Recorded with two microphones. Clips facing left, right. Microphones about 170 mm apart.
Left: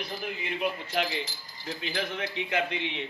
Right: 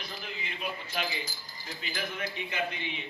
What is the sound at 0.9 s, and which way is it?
A man's voice, 65° left (ahead or behind).